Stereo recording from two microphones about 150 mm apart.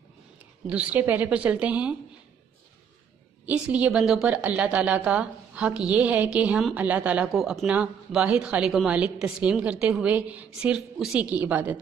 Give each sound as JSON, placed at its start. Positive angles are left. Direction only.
{"t": 0.7, "sound": "speech", "side_deg": -10}
{"t": 3.4, "sound": "speech", "side_deg": -10}